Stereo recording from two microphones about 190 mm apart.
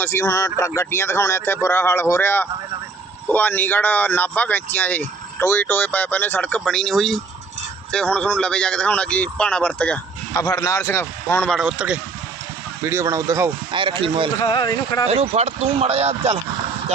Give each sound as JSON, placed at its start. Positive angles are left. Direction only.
{"t": 0.0, "sound": "speech", "side_deg": 15}
{"t": 10.3, "sound": "speech", "side_deg": 15}
{"t": 12.8, "sound": "speech", "side_deg": -15}
{"t": 13.7, "sound": "speech", "side_deg": -25}
{"t": 14.4, "sound": "speech", "side_deg": 25}
{"t": 15.0, "sound": "speech", "side_deg": -30}